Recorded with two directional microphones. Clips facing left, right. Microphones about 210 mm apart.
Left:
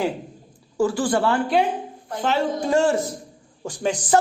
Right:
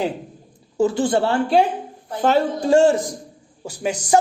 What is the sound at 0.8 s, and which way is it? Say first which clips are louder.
A man's voice: right 2 dB; 20° right (ahead or behind).